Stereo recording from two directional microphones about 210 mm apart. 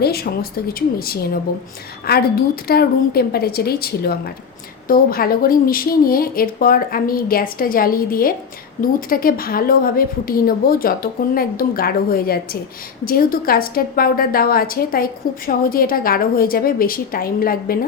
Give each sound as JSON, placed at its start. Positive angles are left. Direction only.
{"t": 0.0, "sound": "a woman's voice", "side_deg": 50}